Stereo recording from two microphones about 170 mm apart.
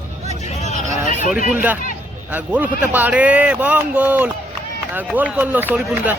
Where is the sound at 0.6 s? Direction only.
45° left (ahead or behind).